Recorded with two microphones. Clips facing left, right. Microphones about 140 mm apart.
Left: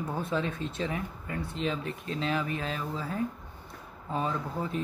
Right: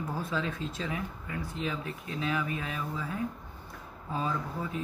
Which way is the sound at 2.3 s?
30° left (ahead or behind).